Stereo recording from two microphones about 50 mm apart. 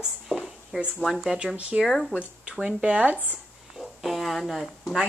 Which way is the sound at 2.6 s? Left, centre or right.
Right.